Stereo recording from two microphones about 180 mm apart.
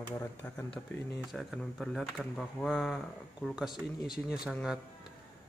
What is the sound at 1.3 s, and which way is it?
Speech, centre (ahead or behind).